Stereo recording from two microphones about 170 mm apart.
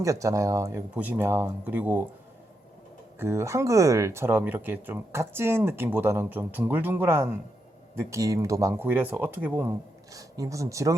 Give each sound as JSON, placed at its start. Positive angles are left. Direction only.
{"t": 0.0, "sound": "speech", "side_deg": -20}
{"t": 3.2, "sound": "speech", "side_deg": -15}